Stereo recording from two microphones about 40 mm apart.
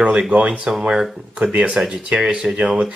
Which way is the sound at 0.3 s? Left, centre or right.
Right.